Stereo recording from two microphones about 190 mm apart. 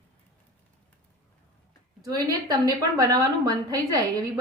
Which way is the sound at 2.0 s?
20° right (ahead or behind).